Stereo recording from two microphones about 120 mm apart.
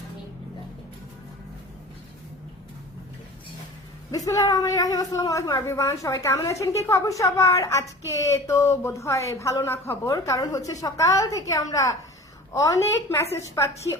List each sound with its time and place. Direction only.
4.1 s speech: 30° left (ahead or behind)